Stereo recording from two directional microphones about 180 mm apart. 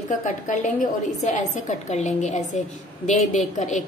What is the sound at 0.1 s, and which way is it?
A woman's voice, 45° left (ahead or behind).